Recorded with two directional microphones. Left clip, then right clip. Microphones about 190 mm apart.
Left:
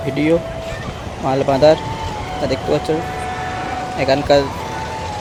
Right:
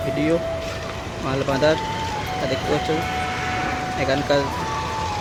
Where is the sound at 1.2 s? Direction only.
15° left (ahead or behind).